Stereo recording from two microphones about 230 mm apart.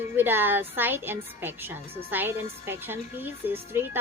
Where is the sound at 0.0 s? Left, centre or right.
Centre.